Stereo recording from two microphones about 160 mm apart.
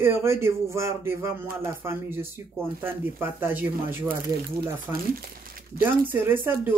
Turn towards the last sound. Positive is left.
turn(degrees=-15)  # may be behind; listen again after turning